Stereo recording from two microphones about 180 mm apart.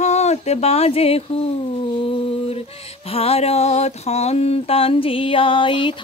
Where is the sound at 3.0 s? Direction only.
30° left (ahead or behind).